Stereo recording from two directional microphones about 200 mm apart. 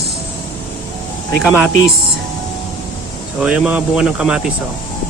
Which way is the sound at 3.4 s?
5° right (ahead or behind).